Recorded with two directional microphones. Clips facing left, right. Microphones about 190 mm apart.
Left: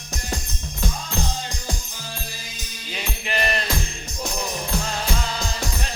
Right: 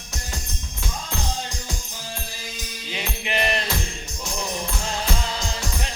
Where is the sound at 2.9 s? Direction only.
20° right (ahead or behind).